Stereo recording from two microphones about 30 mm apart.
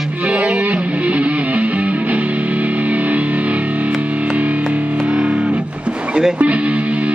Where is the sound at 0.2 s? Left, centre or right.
Right.